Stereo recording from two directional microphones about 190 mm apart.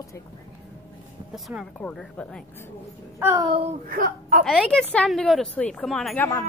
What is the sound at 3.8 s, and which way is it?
Speech, 50° right (ahead or behind).